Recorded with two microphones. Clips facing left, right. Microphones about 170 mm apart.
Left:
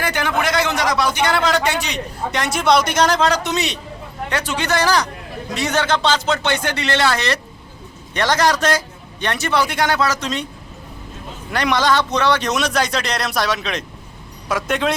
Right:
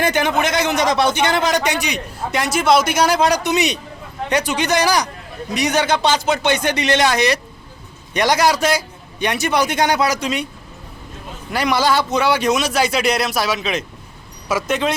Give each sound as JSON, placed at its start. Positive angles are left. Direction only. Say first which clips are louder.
{"t": 0.0, "sound": "a man's voice", "louder": "right 3 dB", "side_deg": -20}
{"t": 11.5, "sound": "a man's voice", "louder": "even", "side_deg": -5}